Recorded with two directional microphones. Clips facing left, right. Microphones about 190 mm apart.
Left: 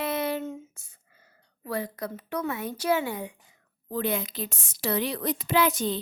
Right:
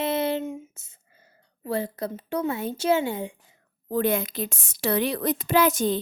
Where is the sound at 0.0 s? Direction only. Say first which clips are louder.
Right 3 dB; 25° right (ahead or behind).